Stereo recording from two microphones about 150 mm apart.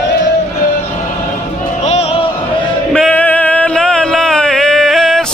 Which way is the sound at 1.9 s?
45° left (ahead or behind).